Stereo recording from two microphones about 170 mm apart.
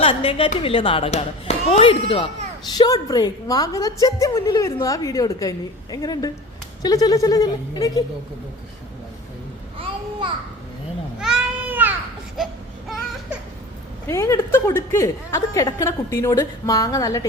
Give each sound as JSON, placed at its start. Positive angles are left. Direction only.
{"t": 0.0, "sound": "speech", "side_deg": 30}
{"t": 9.7, "sound": "babbling", "side_deg": -30}
{"t": 11.2, "sound": "a sound", "side_deg": -5}
{"t": 14.1, "sound": "speech", "side_deg": 15}